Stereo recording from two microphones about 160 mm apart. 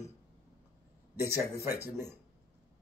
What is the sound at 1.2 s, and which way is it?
Speech, 15° right (ahead or behind).